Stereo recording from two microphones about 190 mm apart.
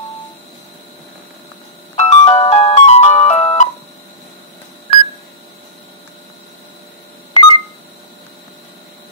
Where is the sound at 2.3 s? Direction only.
35° left (ahead or behind).